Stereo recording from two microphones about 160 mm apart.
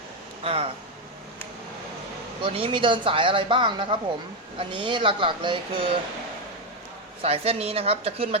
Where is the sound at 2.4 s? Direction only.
35° right (ahead or behind).